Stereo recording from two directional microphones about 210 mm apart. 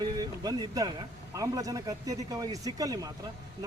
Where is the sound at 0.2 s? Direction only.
20° right (ahead or behind).